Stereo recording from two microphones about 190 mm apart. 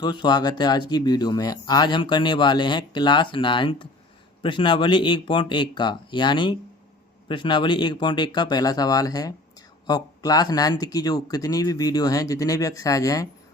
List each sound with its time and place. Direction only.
0.0 s speech: 20° left (ahead or behind)